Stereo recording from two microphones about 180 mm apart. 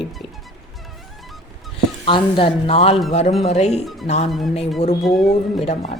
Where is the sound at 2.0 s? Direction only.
30° left (ahead or behind).